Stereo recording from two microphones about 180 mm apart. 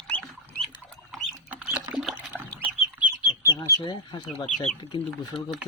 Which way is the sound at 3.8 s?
25° left (ahead or behind).